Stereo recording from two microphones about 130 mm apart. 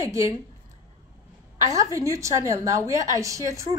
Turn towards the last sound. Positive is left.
turn(degrees=-25)  # may be behind; listen again after turning